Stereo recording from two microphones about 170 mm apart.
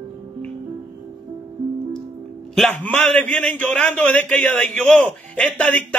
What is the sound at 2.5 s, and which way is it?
A man's voice, 5° left (ahead or behind).